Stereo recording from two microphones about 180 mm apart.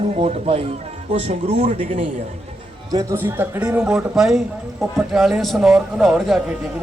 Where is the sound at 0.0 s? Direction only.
35° right (ahead or behind).